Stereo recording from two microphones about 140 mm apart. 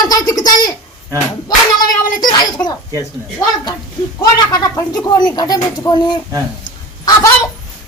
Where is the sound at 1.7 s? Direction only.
30° left (ahead or behind).